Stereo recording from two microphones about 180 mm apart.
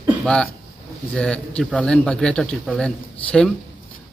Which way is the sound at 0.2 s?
5° left (ahead or behind).